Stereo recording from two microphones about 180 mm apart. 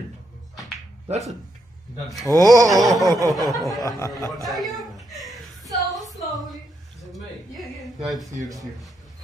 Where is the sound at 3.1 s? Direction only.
20° right (ahead or behind).